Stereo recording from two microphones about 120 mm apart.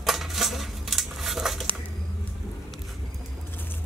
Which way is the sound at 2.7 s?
Centre (ahead or behind).